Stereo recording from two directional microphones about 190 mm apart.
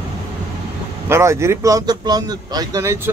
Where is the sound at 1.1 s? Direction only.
15° right (ahead or behind).